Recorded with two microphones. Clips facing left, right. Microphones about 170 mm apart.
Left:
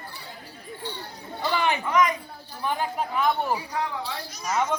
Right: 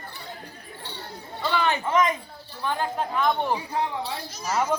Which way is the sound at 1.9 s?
25° right (ahead or behind).